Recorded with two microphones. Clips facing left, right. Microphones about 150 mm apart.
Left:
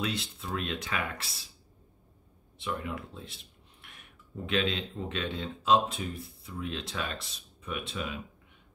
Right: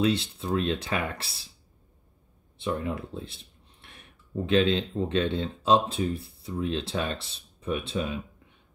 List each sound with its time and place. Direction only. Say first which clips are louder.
0.0 s speech: right 9 dB; 30° right (ahead or behind)
2.6 s speech: right 6 dB; 30° right (ahead or behind)